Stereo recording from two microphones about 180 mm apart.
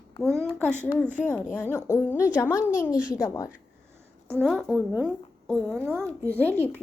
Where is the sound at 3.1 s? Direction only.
20° left (ahead or behind).